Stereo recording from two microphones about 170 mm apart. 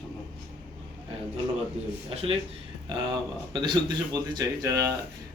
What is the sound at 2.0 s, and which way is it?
Speech, 35° right (ahead or behind).